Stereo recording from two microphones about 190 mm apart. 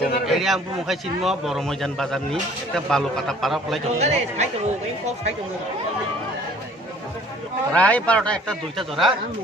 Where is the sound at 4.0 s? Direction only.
35° right (ahead or behind).